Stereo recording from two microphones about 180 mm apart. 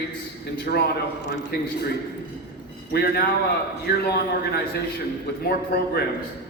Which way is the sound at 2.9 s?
60° left (ahead or behind).